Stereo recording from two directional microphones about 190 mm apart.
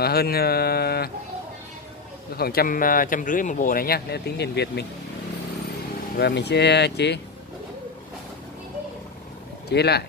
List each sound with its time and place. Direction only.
0.0 s speech: 55° left (ahead or behind)
2.3 s speech: 50° left (ahead or behind)
6.1 s speech: 60° left (ahead or behind)
9.7 s speech: 60° left (ahead or behind)